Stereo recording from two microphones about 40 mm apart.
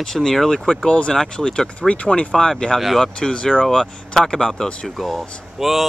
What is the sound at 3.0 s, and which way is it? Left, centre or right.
Speech, centre.